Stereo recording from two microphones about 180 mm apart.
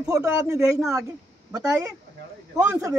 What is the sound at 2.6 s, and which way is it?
Speech, 15° right (ahead or behind).